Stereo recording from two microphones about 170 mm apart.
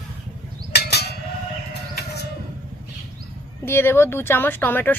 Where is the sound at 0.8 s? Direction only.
75° left (ahead or behind).